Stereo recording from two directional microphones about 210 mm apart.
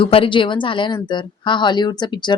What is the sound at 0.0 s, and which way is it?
Speech, 25° left (ahead or behind).